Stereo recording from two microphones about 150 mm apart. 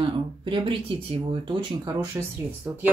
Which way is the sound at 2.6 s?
10° right (ahead or behind).